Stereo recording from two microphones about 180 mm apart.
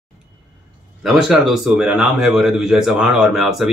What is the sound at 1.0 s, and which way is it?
Speech, centre (ahead or behind).